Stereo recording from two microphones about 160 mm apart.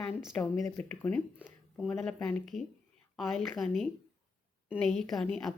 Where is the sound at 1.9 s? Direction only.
5° left (ahead or behind).